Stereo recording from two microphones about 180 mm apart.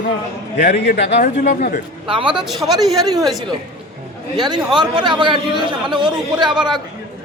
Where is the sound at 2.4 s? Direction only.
Centre (ahead or behind).